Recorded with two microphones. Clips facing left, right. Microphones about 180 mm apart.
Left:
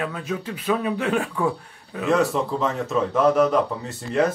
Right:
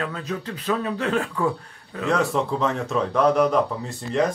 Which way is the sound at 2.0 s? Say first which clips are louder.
Left 2 dB; centre (ahead or behind).